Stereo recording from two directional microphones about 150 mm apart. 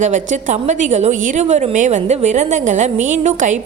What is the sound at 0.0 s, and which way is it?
A woman's voice, 55° right (ahead or behind).